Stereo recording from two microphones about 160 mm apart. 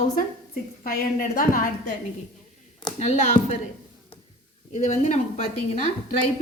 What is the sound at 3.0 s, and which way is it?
Speech, 45° left (ahead or behind).